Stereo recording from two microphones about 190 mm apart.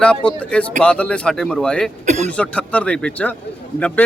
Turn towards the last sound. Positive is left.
turn(degrees=5)  # may be behind; listen again after turning